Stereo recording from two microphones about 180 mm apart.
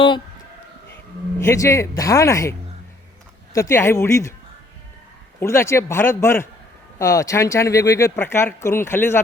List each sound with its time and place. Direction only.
1.5 s speech: 15° left (ahead or behind)
5.4 s speech: 15° left (ahead or behind)